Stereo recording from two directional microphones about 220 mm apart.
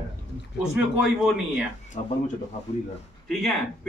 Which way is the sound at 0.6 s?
5° right (ahead or behind).